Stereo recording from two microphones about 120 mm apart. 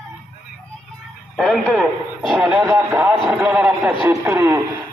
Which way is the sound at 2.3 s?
10° right (ahead or behind).